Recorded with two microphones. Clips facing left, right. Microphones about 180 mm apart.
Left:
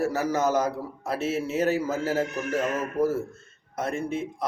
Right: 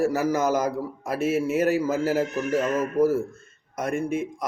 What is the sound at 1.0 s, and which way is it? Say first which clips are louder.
A man's voice: right 3 dB; 10° right (ahead or behind).